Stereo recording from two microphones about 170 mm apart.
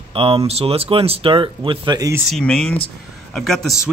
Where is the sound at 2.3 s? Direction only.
5° left (ahead or behind).